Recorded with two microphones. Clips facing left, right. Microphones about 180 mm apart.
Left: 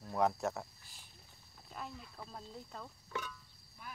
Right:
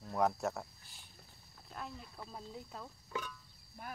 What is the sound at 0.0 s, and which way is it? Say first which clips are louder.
Speech: even; centre (ahead or behind).